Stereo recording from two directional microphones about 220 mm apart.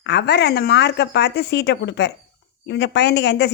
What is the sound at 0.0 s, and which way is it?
A woman's voice, 50° left (ahead or behind).